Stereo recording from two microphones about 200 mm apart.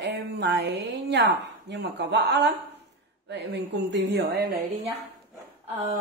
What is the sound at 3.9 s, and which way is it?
Speech, 60° right (ahead or behind).